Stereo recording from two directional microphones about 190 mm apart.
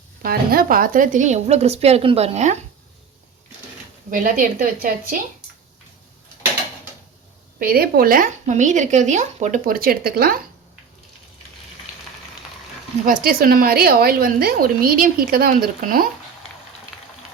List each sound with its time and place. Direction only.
0.2 s a woman's voice: 50° right (ahead or behind); by 2.6 s 35° right (ahead or behind)
4.1 s a woman's voice: 45° right (ahead or behind)
7.6 s a woman's voice: 50° right (ahead or behind)
13.1 s a woman's voice: 50° right (ahead or behind)